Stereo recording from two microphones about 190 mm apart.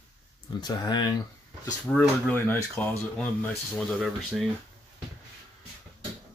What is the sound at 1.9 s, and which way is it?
Speech, 10° left (ahead or behind).